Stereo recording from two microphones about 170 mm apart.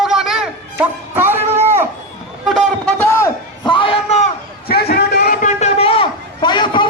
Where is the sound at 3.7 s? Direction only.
30° left (ahead or behind).